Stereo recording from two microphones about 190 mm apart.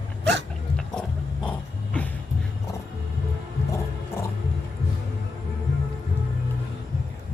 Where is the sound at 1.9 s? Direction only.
5° left (ahead or behind).